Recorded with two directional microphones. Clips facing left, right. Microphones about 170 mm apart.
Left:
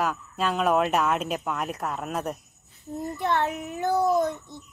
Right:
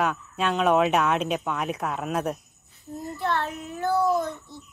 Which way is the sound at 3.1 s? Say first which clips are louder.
Left 2 dB; 15° left (ahead or behind).